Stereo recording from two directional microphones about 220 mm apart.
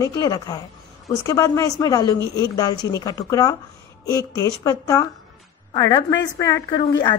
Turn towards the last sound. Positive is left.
turn(degrees=20)  # may be behind; listen again after turning